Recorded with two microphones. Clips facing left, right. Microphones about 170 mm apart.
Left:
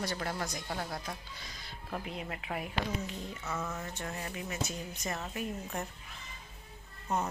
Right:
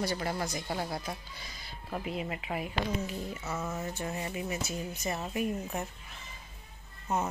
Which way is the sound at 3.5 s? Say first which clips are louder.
Right 2 dB; 20° right (ahead or behind).